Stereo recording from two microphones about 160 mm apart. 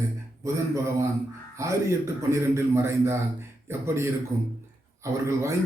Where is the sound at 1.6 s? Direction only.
20° right (ahead or behind).